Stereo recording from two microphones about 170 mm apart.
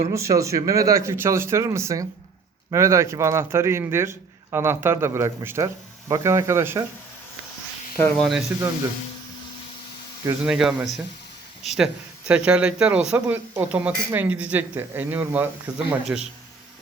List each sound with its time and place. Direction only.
0.1 s a man's voice: 15° right (ahead or behind)
8.2 s speech: centre (ahead or behind)
10.4 s a man's voice: 5° right (ahead or behind)